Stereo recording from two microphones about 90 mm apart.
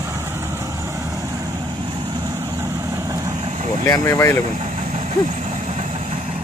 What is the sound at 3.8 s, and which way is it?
Speech, 35° left (ahead or behind).